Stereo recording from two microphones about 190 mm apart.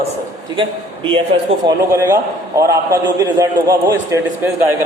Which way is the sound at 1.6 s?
15° right (ahead or behind).